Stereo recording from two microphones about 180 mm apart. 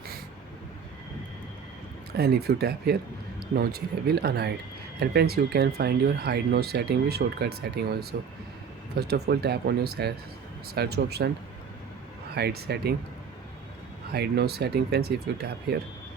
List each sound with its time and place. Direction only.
2.1 s speech: 60° right (ahead or behind)
12.3 s speech: 65° right (ahead or behind)
14.1 s speech: 65° right (ahead or behind)